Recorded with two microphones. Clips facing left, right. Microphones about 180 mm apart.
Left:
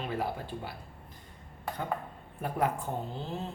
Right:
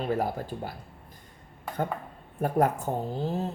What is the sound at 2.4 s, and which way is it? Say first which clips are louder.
Speech: right 6 dB; 45° right (ahead or behind).